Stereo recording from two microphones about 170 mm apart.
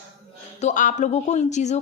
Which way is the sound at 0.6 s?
50° left (ahead or behind).